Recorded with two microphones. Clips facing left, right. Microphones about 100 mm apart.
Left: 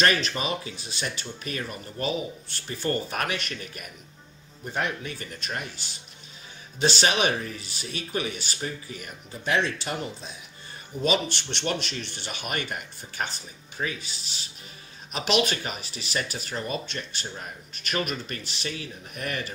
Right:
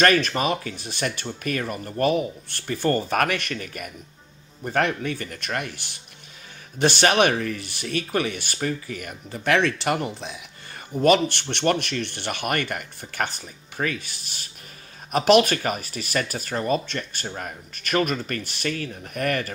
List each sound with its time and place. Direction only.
0.0 s speech: 50° right (ahead or behind)
4.7 s speech: 60° right (ahead or behind)